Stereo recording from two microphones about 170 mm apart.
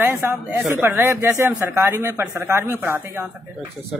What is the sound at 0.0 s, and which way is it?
Speech, 15° right (ahead or behind).